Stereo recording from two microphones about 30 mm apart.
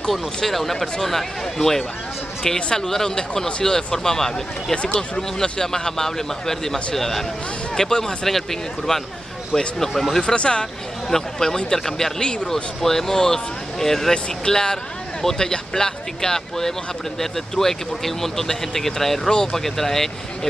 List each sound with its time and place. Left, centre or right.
0.5 s speech: centre
8.3 s speech: centre
10.2 s speech: left
11.1 s speech: centre
12.2 s speech: left
12.8 s speech: centre
14.1 s speech: left